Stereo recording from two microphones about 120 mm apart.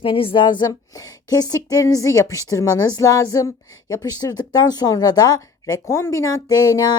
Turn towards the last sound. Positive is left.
turn(degrees=30)  # may be behind; listen again after turning